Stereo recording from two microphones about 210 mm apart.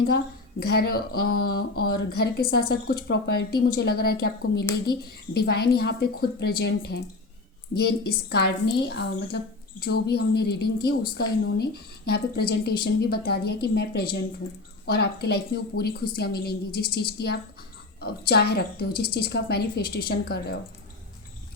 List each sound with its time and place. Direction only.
0.6 s speech: 50° left (ahead or behind)